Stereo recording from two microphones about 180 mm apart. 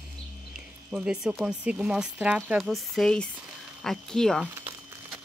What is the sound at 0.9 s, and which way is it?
Speech, 5° right (ahead or behind).